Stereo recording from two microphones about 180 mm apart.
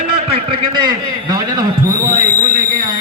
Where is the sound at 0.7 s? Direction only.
20° right (ahead or behind).